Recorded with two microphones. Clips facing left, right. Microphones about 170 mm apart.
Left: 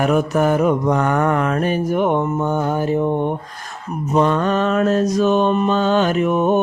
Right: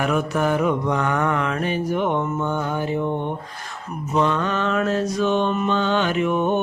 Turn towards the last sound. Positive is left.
turn(degrees=40)  # may be behind; listen again after turning